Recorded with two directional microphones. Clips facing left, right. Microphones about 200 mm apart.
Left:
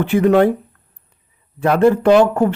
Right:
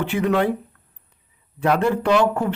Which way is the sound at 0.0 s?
50° left (ahead or behind).